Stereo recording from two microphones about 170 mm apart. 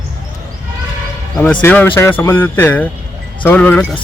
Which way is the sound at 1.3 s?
5° left (ahead or behind).